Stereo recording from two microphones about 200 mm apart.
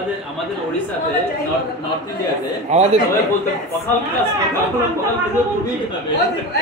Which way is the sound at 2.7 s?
30° right (ahead or behind).